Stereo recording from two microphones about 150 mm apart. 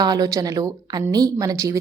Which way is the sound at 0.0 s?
25° right (ahead or behind).